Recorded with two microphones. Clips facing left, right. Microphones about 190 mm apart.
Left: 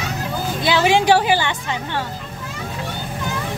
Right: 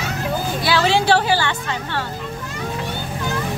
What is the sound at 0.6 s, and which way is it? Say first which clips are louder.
Speech: left 2 dB; 20° left (ahead or behind).